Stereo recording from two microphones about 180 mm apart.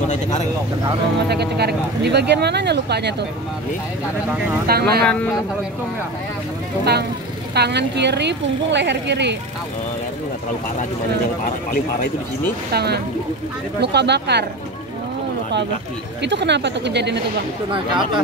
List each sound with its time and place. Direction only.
1.3 s speech: 65° right (ahead or behind)
4.6 s speech: 60° right (ahead or behind)
5.0 s a man's voice: 5° left (ahead or behind)
6.8 s speech: 65° right (ahead or behind)
12.7 s speech: 65° right (ahead or behind)
16.2 s speech: 75° right (ahead or behind)
17.6 s speech: 25° right (ahead or behind)